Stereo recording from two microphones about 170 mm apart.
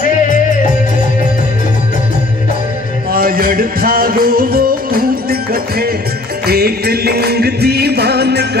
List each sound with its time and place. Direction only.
3.1 s music: 60° right (ahead or behind)